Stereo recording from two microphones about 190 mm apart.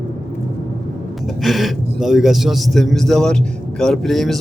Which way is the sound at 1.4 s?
Centre (ahead or behind).